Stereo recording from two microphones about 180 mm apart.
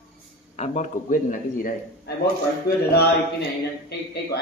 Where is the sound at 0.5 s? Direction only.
40° left (ahead or behind).